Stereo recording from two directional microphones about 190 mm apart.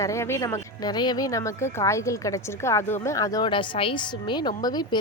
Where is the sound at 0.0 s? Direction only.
15° left (ahead or behind).